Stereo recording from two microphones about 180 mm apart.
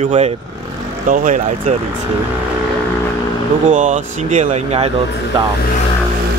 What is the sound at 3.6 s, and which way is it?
Speech, 45° right (ahead or behind).